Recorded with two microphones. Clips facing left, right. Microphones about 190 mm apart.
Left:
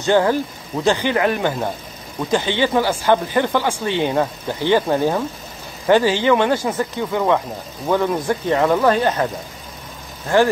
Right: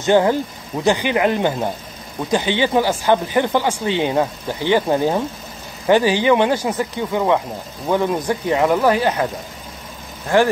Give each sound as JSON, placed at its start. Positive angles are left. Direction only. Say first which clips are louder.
{"t": 0.0, "sound": "speech", "louder": "right 1 dB", "side_deg": -20}